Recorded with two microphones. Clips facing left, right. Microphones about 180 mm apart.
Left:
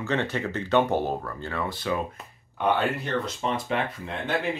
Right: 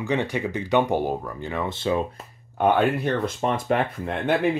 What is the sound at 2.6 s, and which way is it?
Speech, 50° right (ahead or behind).